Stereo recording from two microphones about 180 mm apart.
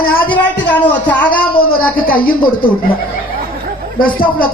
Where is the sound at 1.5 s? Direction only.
55° left (ahead or behind).